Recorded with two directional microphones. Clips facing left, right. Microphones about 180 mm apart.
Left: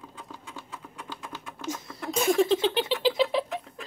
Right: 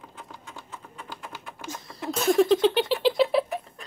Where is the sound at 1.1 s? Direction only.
10° right (ahead or behind).